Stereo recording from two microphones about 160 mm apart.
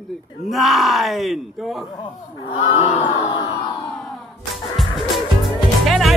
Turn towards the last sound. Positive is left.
turn(degrees=0)  # may be behind; listen again after turning